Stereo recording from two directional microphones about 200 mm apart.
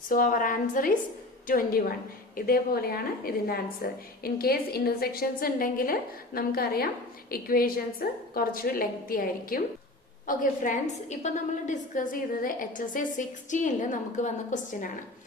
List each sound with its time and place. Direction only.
0.1 s a woman's voice: 45° left (ahead or behind)